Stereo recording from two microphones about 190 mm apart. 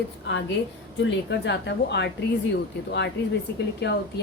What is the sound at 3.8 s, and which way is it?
Speech, 65° left (ahead or behind).